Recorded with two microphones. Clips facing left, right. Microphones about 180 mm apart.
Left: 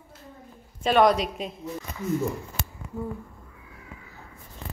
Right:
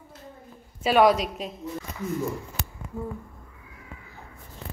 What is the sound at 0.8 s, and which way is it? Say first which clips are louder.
Speech: right 1 dB; 5° right (ahead or behind).